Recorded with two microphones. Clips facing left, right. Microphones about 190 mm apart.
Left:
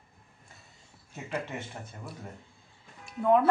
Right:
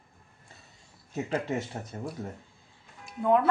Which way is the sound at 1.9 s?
35° right (ahead or behind).